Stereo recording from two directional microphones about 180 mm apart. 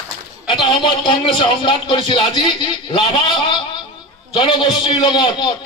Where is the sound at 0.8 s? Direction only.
25° left (ahead or behind).